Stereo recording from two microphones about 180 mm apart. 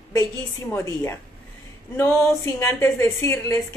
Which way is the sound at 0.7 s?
15° left (ahead or behind).